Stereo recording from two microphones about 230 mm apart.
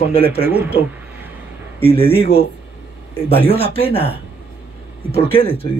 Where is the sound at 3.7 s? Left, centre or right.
Left.